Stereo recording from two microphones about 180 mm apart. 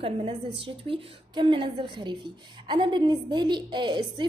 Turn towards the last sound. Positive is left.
turn(degrees=-25)  # may be behind; listen again after turning